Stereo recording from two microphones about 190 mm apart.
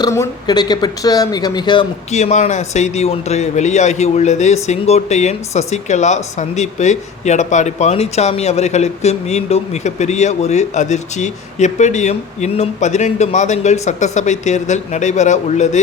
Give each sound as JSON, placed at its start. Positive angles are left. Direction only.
{"t": 0.0, "sound": "speech", "side_deg": 20}